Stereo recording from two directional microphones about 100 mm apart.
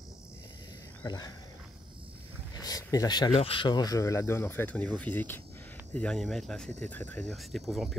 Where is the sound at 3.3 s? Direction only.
70° left (ahead or behind).